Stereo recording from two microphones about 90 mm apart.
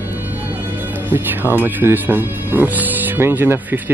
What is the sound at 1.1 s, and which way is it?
Speech, 20° right (ahead or behind).